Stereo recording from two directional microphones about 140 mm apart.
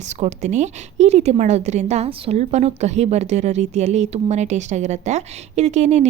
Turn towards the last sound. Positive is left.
turn(degrees=-55)  # may be behind; listen again after turning